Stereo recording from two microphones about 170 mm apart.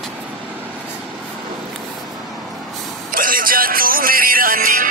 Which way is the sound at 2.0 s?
Centre (ahead or behind).